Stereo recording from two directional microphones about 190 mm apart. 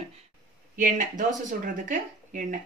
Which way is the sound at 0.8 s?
45° right (ahead or behind).